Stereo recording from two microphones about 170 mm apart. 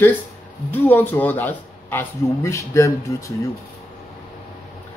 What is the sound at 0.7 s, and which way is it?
Speech, 10° left (ahead or behind).